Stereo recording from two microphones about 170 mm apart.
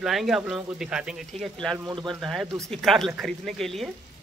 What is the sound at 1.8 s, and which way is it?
Speech, 25° right (ahead or behind).